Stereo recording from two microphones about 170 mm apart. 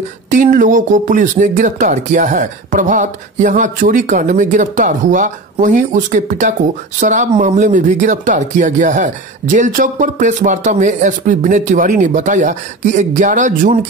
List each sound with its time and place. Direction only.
0.3 s speech: 50° right (ahead or behind)